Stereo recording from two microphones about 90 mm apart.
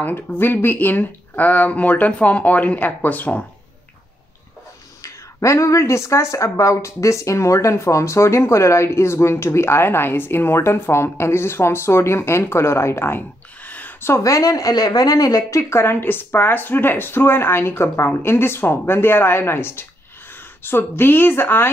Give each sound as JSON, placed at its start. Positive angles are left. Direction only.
{"t": 0.0, "sound": "speech", "side_deg": 20}
{"t": 5.0, "sound": "speech", "side_deg": 35}
{"t": 13.7, "sound": "a sound", "side_deg": 20}
{"t": 14.1, "sound": "speech", "side_deg": 35}
{"t": 15.7, "sound": "a woman's voice", "side_deg": 25}